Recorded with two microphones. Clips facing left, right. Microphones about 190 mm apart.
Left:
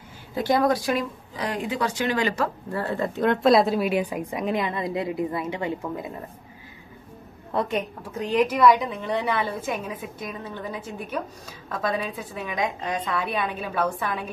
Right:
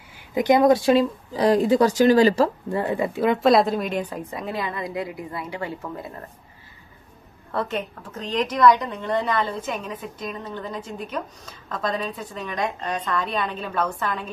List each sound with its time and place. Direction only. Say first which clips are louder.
0.3 s speech: right 5 dB; 20° right (ahead or behind)
2.7 s a woman's voice: right 3 dB; 15° right (ahead or behind); by 6.1 s 15° left (ahead or behind)
7.5 s a woman's voice: left 1 dB; 15° left (ahead or behind)